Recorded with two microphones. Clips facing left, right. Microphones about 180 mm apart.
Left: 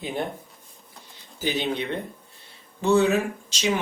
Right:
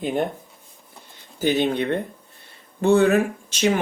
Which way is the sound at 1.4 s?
55° right (ahead or behind).